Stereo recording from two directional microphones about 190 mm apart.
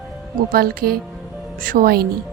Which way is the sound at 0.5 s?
50° right (ahead or behind).